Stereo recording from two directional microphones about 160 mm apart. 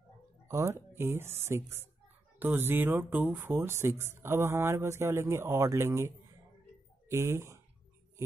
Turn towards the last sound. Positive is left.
turn(degrees=-15)  # may be behind; listen again after turning